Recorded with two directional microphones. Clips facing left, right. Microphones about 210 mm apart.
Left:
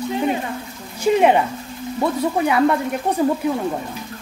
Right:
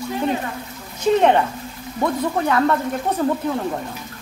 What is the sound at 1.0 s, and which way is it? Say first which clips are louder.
Speech: even; 10° left (ahead or behind).